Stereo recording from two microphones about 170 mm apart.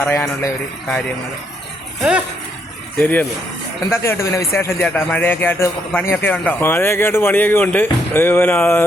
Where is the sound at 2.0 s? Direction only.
5° right (ahead or behind).